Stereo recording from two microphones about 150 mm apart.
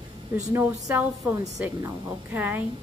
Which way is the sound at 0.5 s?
20° right (ahead or behind).